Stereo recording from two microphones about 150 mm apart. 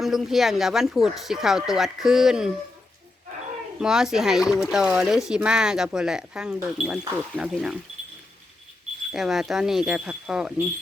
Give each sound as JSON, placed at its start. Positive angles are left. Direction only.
{"t": 0.0, "sound": "speech", "side_deg": 0}
{"t": 3.8, "sound": "speech", "side_deg": -5}
{"t": 9.1, "sound": "speech", "side_deg": 0}